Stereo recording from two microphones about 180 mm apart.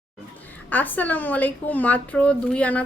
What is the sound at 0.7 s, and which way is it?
A woman's voice, 10° left (ahead or behind).